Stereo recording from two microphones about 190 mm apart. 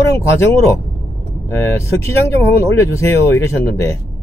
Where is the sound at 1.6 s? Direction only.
15° left (ahead or behind).